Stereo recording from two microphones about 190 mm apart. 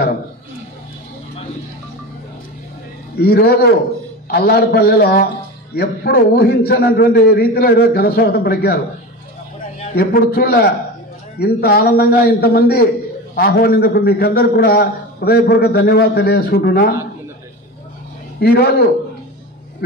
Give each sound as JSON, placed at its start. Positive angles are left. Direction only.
{"t": 3.2, "sound": "a man's voice", "side_deg": 55}
{"t": 9.9, "sound": "a man's voice", "side_deg": 55}
{"t": 18.4, "sound": "a man's voice", "side_deg": 55}